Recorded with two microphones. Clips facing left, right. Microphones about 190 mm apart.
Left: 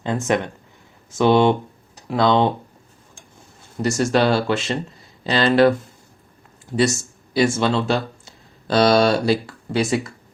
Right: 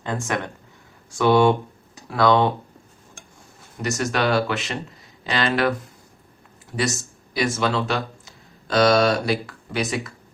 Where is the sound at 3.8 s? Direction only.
30° left (ahead or behind).